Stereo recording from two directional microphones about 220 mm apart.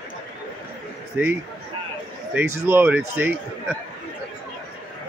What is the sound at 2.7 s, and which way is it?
A man's voice, 10° right (ahead or behind).